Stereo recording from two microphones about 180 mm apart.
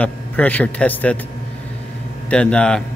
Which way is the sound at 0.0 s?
10° left (ahead or behind).